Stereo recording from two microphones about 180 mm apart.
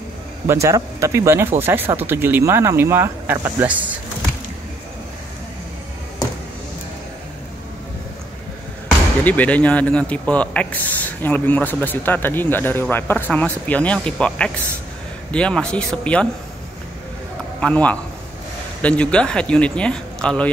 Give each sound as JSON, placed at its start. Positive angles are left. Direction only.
{"t": 0.5, "sound": "speech", "side_deg": -15}
{"t": 9.2, "sound": "a man's voice", "side_deg": 10}
{"t": 17.6, "sound": "a man's voice", "side_deg": 5}